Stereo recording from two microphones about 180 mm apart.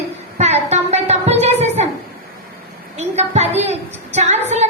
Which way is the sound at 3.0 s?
35° right (ahead or behind).